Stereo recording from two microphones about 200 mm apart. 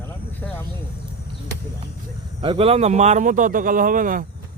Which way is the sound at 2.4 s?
25° right (ahead or behind).